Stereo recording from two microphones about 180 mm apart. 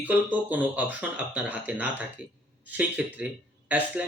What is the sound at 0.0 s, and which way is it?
Speech, 10° right (ahead or behind).